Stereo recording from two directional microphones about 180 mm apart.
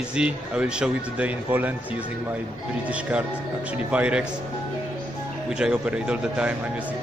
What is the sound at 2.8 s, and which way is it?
Speech, 5° right (ahead or behind).